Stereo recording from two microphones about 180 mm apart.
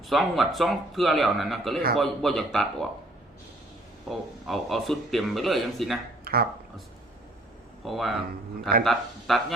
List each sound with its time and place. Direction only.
0.1 s speech: centre (ahead or behind)
4.1 s speech: centre (ahead or behind)
6.2 s speech: 60° right (ahead or behind)
7.9 s speech: centre (ahead or behind)